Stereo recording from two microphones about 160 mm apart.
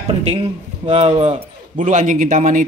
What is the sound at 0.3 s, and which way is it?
A man's voice, 45° right (ahead or behind).